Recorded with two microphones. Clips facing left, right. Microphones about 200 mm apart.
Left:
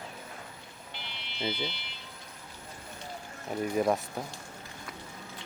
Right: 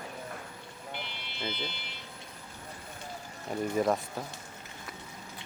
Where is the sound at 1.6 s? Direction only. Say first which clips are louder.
Left 3 dB; 45° right (ahead or behind).